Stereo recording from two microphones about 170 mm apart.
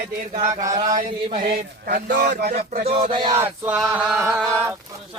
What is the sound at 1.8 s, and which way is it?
Speech, 60° right (ahead or behind).